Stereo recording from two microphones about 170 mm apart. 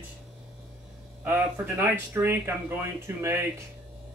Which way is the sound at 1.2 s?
10° right (ahead or behind).